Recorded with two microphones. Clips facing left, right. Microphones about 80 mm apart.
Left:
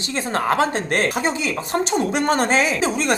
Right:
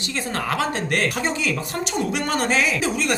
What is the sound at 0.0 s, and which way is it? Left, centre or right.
Speech, left.